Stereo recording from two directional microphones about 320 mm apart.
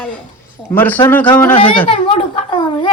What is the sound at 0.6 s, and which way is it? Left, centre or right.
A man's voice, centre.